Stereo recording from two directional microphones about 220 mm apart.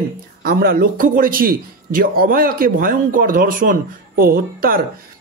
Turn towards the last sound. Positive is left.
turn(degrees=-40)  # may be behind; listen again after turning